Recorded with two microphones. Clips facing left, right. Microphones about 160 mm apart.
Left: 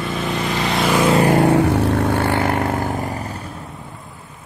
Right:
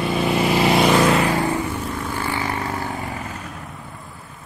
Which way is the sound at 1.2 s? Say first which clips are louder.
Left 7 dB; 65° left (ahead or behind).